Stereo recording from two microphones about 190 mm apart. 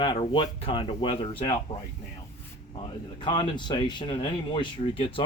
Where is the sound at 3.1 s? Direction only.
25° left (ahead or behind).